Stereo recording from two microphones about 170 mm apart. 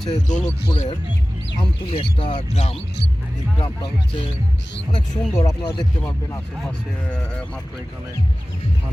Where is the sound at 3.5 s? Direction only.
30° left (ahead or behind).